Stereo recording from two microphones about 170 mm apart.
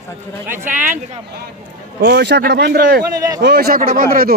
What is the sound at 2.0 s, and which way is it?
Speech, 75° right (ahead or behind).